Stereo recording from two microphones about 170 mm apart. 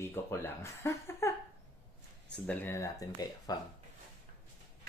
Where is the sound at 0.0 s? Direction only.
15° left (ahead or behind).